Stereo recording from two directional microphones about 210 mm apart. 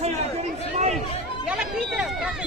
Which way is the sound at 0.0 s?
30° right (ahead or behind).